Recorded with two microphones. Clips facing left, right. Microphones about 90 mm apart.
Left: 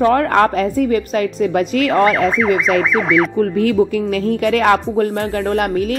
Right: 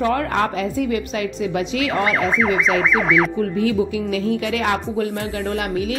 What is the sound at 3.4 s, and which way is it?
A woman's voice, 55° left (ahead or behind).